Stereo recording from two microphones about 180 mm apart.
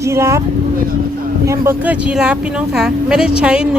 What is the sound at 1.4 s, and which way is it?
Speech, 10° right (ahead or behind).